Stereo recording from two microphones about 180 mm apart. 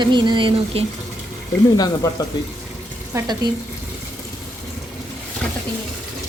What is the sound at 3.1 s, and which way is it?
Speech, 20° right (ahead or behind).